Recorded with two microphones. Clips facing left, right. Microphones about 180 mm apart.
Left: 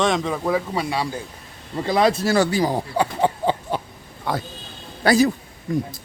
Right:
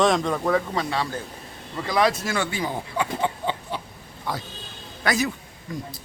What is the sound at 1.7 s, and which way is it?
Speech, 30° left (ahead or behind).